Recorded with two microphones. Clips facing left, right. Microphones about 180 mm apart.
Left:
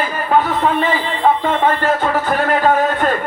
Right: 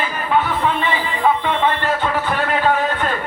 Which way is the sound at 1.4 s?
45° left (ahead or behind).